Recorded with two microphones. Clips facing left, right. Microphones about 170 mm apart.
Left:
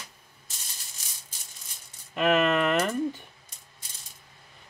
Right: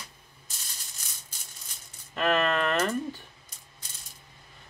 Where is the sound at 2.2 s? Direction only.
15° left (ahead or behind).